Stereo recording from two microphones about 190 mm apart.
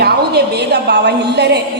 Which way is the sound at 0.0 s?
60° right (ahead or behind).